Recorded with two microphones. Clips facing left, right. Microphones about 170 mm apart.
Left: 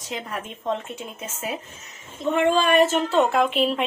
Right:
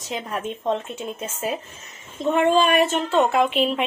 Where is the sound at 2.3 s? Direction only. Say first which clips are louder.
Right 1 dB; 20° right (ahead or behind).